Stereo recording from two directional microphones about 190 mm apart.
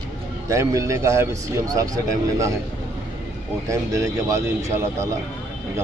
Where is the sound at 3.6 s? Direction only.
15° right (ahead or behind).